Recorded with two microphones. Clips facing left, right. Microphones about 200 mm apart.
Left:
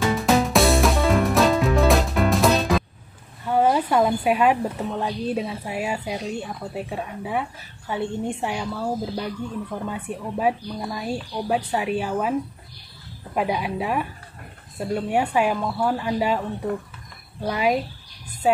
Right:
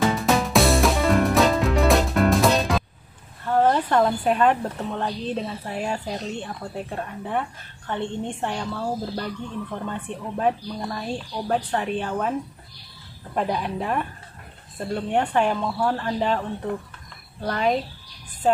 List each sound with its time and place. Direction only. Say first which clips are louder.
0.2 s music: left 1 dB; centre (ahead or behind)
3.4 s a woman's voice: even; 10° left (ahead or behind)